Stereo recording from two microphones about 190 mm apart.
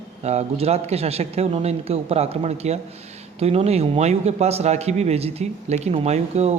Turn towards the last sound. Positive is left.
turn(degrees=-35)  # may be behind; listen again after turning